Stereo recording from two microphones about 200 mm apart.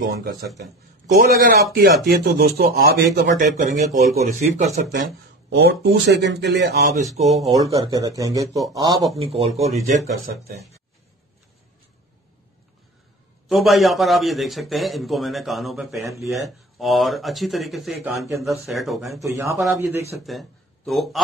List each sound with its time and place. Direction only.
0.2 s speech: 50° right (ahead or behind)
3.3 s speech: 40° right (ahead or behind)
5.5 s speech: 55° right (ahead or behind)
7.2 s speech: 30° right (ahead or behind)
7.5 s speech: 15° right (ahead or behind); by 10.7 s 30° right (ahead or behind)
13.5 s a man's voice: centre (ahead or behind)
19.3 s speech: 15° right (ahead or behind)
20.2 s speech: centre (ahead or behind)